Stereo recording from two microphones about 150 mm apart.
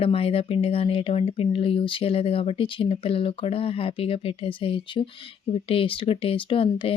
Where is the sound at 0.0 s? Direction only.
40° left (ahead or behind).